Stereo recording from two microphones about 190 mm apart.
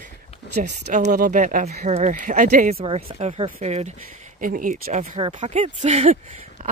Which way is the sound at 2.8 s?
30° right (ahead or behind).